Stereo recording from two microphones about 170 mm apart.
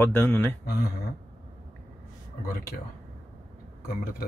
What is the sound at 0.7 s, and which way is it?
Speech, 60° left (ahead or behind).